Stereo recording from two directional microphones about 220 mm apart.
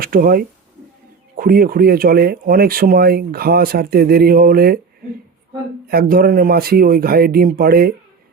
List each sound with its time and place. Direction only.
0.0 s speech: 40° right (ahead or behind)
5.9 s speech: 40° right (ahead or behind)